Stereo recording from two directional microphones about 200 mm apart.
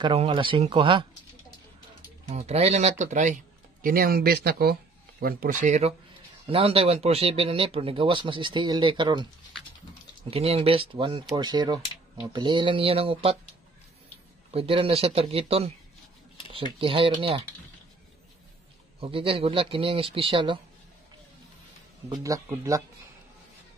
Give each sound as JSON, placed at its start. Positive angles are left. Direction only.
{"t": 0.0, "sound": "speech", "side_deg": -25}
{"t": 2.2, "sound": "speech", "side_deg": -35}
{"t": 10.3, "sound": "speech", "side_deg": -30}
{"t": 14.5, "sound": "speech", "side_deg": -30}
{"t": 16.7, "sound": "speech", "side_deg": -25}
{"t": 18.9, "sound": "speech", "side_deg": -25}
{"t": 22.1, "sound": "speech", "side_deg": -15}